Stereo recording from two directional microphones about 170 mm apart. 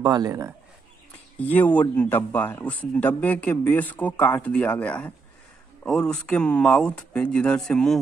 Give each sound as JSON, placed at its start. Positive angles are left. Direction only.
{"t": 0.0, "sound": "a man's voice", "side_deg": -25}
{"t": 1.4, "sound": "speech", "side_deg": 10}